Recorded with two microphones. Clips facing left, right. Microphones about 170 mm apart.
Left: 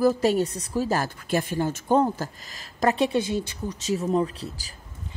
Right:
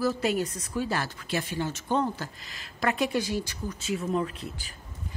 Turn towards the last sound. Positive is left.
turn(degrees=35)  # may be behind; listen again after turning